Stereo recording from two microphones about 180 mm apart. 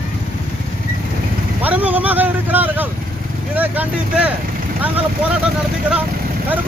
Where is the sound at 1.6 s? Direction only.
10° right (ahead or behind).